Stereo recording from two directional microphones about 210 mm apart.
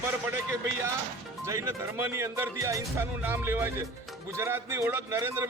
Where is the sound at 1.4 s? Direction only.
15° right (ahead or behind).